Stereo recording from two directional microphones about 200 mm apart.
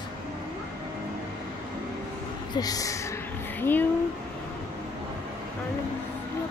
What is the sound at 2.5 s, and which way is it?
Speech, 20° left (ahead or behind).